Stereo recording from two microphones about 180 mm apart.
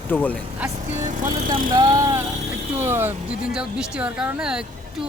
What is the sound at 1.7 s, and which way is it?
Vehicle, 20° right (ahead or behind).